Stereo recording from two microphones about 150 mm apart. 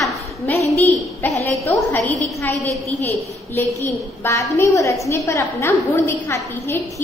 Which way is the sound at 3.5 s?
20° left (ahead or behind).